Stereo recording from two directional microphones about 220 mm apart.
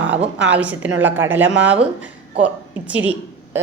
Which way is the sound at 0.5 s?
5° right (ahead or behind).